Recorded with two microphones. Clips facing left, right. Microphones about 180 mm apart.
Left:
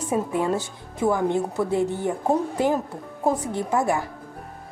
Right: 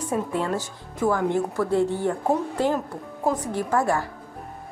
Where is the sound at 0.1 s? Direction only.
20° left (ahead or behind).